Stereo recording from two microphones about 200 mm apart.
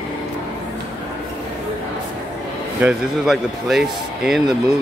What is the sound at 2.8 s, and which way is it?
Speech, centre (ahead or behind).